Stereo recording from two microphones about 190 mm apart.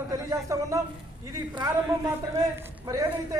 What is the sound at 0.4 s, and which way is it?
A woman's voice, 15° right (ahead or behind).